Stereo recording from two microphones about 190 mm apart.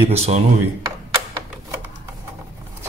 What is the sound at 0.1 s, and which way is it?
Speech, 30° right (ahead or behind).